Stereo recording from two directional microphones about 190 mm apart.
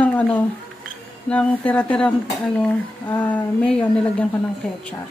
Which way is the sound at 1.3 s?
5° left (ahead or behind).